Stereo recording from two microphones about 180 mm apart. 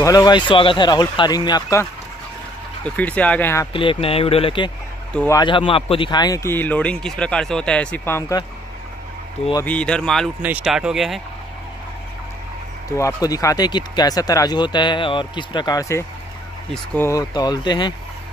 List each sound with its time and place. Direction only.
0.0 s speech: 20° left (ahead or behind)
2.8 s speech: 10° left (ahead or behind)
3.7 s speech: 30° left (ahead or behind); by 8.2 s 10° left (ahead or behind)
9.7 s speech: 5° left (ahead or behind)
12.9 s speech: 20° left (ahead or behind)